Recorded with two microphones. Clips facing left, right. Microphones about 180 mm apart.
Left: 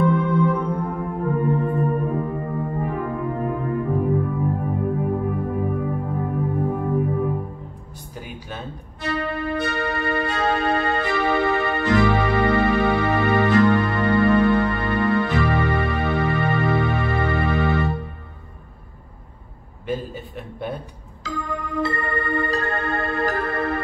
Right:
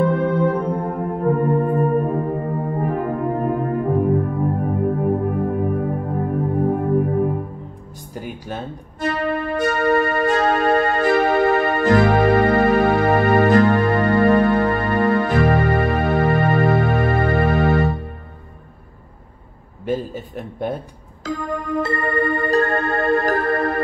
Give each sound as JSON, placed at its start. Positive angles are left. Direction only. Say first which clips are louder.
{"t": 0.0, "sound": "music", "louder": "right 2 dB", "side_deg": -50}
{"t": 19.9, "sound": "a sound", "louder": "right 4 dB", "side_deg": -45}
{"t": 21.7, "sound": "music", "louder": "right 4 dB", "side_deg": -50}